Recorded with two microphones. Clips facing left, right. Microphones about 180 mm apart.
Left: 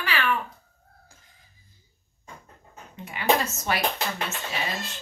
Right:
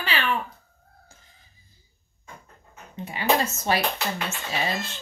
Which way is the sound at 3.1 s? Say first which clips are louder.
Even; 30° right (ahead or behind).